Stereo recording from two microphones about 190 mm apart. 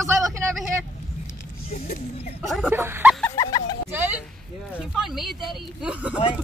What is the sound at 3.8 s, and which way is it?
Speech, 10° right (ahead or behind).